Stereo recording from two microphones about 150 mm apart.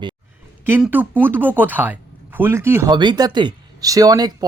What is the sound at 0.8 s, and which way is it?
Speech, 10° right (ahead or behind).